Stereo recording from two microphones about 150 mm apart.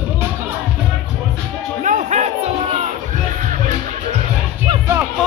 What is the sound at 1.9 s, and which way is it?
Music, 55° right (ahead or behind).